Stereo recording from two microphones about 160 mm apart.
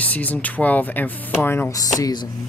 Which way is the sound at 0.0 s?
10° left (ahead or behind).